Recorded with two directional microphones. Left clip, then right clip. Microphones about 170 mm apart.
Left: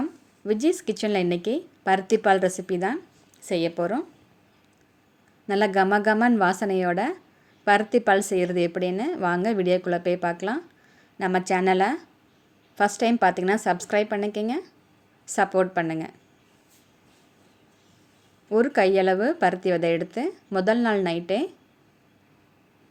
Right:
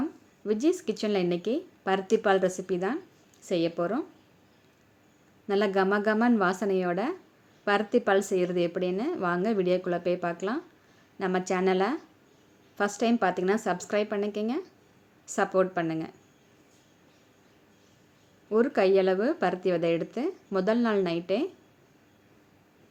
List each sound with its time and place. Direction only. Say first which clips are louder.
0.0 s speech: left 3 dB; 25° left (ahead or behind)
5.5 s speech: left 4 dB; 25° left (ahead or behind)
18.4 s speech: left 3 dB; 25° left (ahead or behind)